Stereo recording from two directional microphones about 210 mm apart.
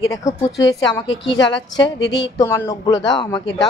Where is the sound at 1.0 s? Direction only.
60° left (ahead or behind).